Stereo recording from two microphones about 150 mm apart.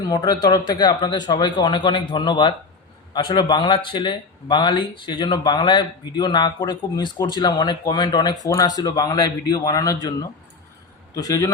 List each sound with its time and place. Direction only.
0.1 s speech: 25° left (ahead or behind)
11.1 s speech: 25° left (ahead or behind)